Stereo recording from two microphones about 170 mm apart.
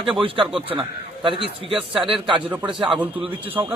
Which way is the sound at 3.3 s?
10° right (ahead or behind).